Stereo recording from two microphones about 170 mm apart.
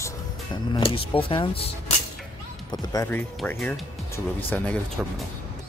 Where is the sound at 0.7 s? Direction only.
30° left (ahead or behind).